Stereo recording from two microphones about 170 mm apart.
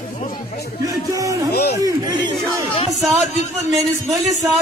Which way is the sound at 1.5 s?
70° left (ahead or behind).